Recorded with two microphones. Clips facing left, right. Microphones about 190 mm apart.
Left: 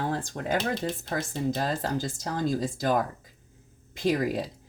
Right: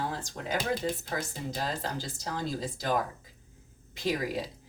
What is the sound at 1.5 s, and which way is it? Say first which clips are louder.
Speech: left 5 dB; 45° left (ahead or behind).